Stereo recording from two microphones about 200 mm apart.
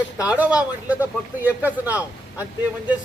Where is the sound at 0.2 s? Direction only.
5° right (ahead or behind).